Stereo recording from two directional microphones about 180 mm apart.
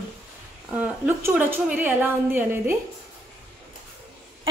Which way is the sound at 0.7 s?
10° right (ahead or behind).